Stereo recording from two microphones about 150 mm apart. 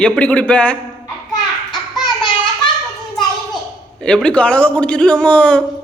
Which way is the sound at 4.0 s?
5° left (ahead or behind).